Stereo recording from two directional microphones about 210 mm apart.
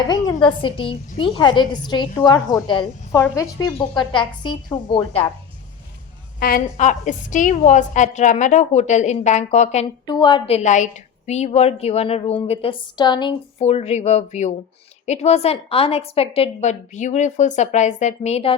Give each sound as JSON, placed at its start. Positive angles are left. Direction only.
{"t": 0.1, "sound": "a woman's voice", "side_deg": 20}
{"t": 6.4, "sound": "a woman's voice", "side_deg": 40}
{"t": 10.1, "sound": "a woman's voice", "side_deg": 20}